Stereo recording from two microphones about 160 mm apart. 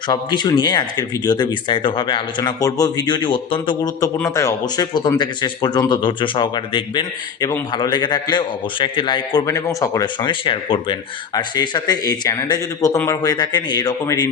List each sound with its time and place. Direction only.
0.1 s speech: 25° left (ahead or behind)
4.0 s speech: 20° left (ahead or behind)